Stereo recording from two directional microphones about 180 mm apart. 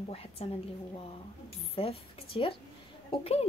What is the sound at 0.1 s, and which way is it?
Speech, 35° left (ahead or behind).